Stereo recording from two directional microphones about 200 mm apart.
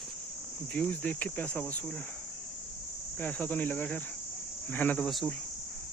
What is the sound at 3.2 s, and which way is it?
Cricket, 5° left (ahead or behind).